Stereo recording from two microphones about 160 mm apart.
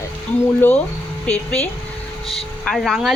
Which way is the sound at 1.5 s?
10° left (ahead or behind).